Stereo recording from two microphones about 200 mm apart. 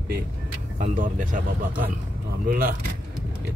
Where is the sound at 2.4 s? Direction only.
45° right (ahead or behind).